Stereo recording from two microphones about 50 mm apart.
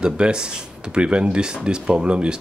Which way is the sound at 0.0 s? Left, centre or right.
Centre.